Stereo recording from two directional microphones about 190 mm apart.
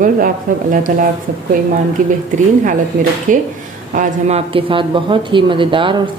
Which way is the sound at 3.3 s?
40° right (ahead or behind).